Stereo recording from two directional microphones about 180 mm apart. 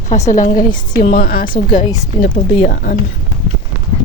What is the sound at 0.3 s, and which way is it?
A woman's voice, 45° left (ahead or behind).